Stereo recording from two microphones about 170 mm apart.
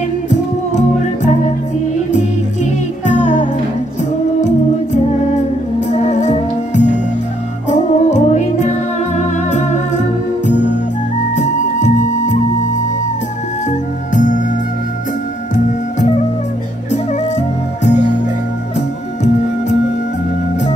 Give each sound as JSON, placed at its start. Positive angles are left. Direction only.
{"t": 0.3, "sound": "music", "side_deg": 45}
{"t": 4.4, "sound": "music", "side_deg": 45}
{"t": 13.7, "sound": "music", "side_deg": 50}
{"t": 15.5, "sound": "music", "side_deg": 45}